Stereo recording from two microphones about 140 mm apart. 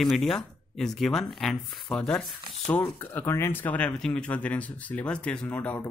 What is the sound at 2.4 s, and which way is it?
Speech, 45° right (ahead or behind).